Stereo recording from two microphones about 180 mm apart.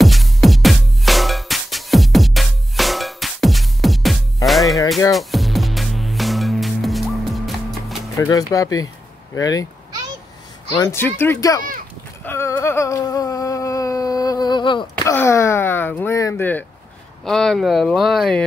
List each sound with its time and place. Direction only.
0.0 s music: centre (ahead or behind)
8.2 s speech: 20° left (ahead or behind)
10.8 s speech: 15° left (ahead or behind)
12.3 s a sound: 15° left (ahead or behind)
15.1 s speech: 15° left (ahead or behind)